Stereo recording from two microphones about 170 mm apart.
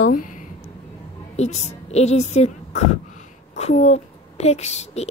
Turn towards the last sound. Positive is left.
turn(degrees=40)  # may be behind; listen again after turning